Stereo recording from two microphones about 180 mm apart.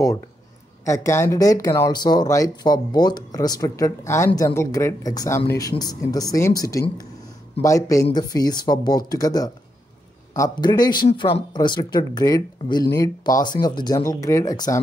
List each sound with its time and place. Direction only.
0.8 s speech: 15° left (ahead or behind)